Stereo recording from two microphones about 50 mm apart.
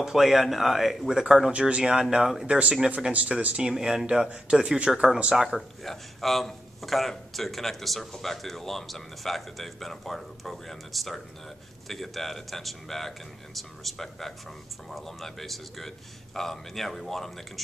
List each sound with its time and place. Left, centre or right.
0.0 s a man's voice: centre
2.4 s speech: centre
3.7 s speech: centre
5.3 s speech: centre
5.9 s a man's voice: centre